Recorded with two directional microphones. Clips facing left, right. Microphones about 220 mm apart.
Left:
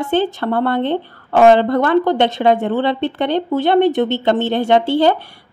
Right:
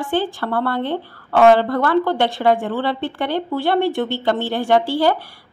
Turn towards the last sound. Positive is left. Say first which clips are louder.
# left 3 dB
turn(degrees=20)  # may be behind; listen again after turning